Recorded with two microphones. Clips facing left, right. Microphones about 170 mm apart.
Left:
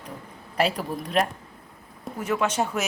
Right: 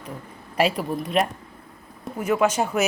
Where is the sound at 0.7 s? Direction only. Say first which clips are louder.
Right 2 dB; 5° right (ahead or behind).